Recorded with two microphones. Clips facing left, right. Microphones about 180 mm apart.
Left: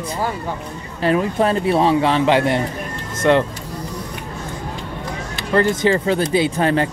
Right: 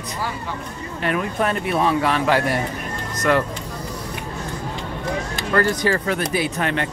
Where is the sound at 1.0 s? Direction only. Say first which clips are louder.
Left 5 dB; 30° left (ahead or behind).